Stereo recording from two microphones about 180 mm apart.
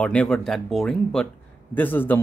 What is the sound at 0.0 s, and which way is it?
Speech, 5° left (ahead or behind).